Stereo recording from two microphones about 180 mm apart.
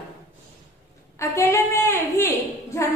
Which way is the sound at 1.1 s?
15° left (ahead or behind).